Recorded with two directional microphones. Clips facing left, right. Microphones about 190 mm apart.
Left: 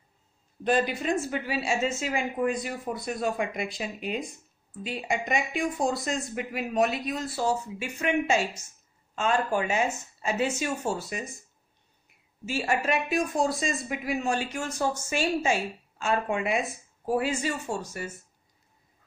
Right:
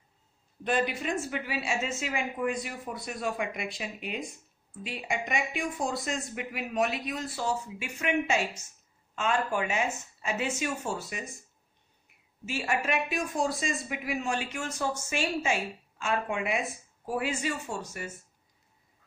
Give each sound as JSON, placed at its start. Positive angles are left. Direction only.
{"t": 0.7, "sound": "speech", "side_deg": 35}
{"t": 12.4, "sound": "speech", "side_deg": 35}